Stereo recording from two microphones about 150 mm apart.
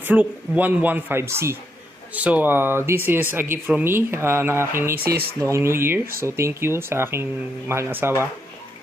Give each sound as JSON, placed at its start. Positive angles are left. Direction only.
{"t": 0.0, "sound": "speech", "side_deg": -10}
{"t": 5.0, "sound": "speech", "side_deg": -90}
{"t": 5.4, "sound": "speech", "side_deg": -20}